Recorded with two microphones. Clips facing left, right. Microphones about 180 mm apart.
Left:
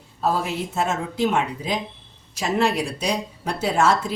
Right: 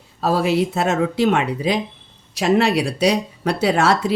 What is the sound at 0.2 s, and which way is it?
Speech, 80° right.